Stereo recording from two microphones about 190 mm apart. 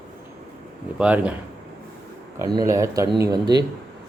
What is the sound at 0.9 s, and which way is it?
Speech, 5° right (ahead or behind).